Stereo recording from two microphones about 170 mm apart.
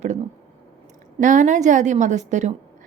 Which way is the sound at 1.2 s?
45° right (ahead or behind).